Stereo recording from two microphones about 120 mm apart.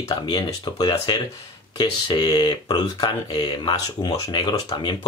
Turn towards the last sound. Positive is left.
turn(degrees=35)  # may be behind; listen again after turning